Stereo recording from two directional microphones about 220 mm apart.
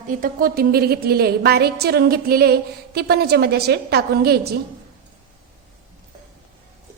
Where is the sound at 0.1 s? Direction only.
40° right (ahead or behind).